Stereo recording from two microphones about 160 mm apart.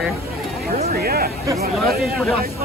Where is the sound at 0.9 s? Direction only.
70° right (ahead or behind).